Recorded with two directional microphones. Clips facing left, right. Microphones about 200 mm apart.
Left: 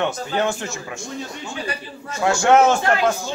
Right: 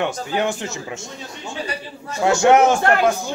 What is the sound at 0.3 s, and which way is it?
Speech, 15° right (ahead or behind).